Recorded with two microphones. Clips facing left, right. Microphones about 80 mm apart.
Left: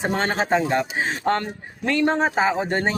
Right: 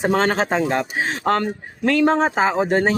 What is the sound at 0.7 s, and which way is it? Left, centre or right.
Speech, right.